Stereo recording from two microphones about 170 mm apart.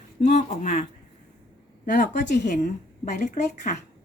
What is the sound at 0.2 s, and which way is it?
Speech, 45° left (ahead or behind).